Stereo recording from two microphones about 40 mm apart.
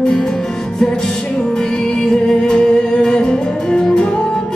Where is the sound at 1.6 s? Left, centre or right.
Centre.